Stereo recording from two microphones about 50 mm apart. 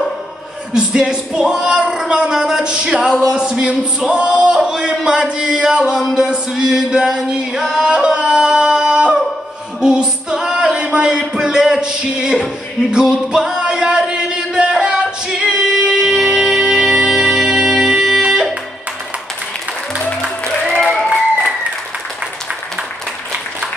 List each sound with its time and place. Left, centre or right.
0.7 s speech: centre
6.5 s yodeling: centre
9.8 s a sound: centre
12.9 s singing: centre
15.9 s music: centre
20.8 s applause: centre